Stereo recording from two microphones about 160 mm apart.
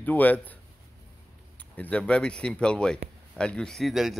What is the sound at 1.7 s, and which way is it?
Speech, 10° left (ahead or behind).